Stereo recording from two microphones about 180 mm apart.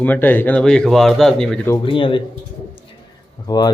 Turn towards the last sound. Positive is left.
turn(degrees=25)  # may be behind; listen again after turning